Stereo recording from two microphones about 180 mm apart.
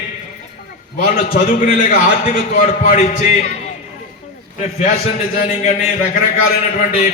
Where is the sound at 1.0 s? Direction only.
50° left (ahead or behind).